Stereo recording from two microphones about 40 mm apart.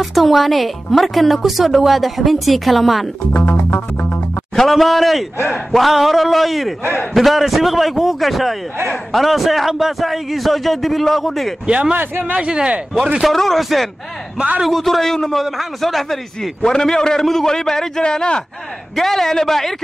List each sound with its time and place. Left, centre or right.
0.0 s a woman's voice: centre
3.3 s music: left
4.6 s a woman's voice: centre
11.6 s speech: right
12.0 s speech: right
12.4 s speech: centre
13.2 s a woman's voice: centre
16.6 s a man's voice: centre
18.9 s a man's voice: centre